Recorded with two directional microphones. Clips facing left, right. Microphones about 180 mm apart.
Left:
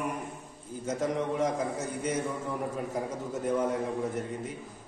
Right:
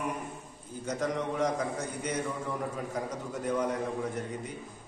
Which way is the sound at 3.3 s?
5° left (ahead or behind).